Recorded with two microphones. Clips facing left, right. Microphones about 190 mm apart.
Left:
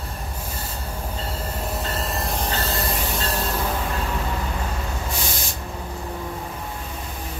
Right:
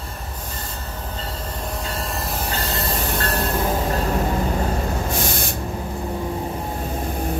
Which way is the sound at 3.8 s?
40° right (ahead or behind).